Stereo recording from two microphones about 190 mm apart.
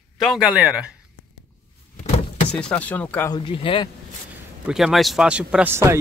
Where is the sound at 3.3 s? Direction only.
25° left (ahead or behind).